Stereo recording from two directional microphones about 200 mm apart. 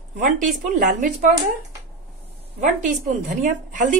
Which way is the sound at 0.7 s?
40° right (ahead or behind).